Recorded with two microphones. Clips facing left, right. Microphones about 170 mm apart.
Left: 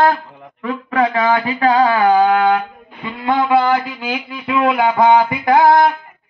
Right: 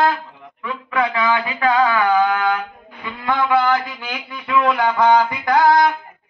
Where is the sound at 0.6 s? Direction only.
40° left (ahead or behind).